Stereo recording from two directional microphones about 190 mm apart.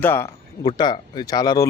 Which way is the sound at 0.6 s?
20° left (ahead or behind).